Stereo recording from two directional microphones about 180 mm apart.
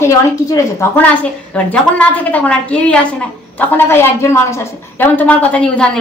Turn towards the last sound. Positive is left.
turn(degrees=5)  # may be behind; listen again after turning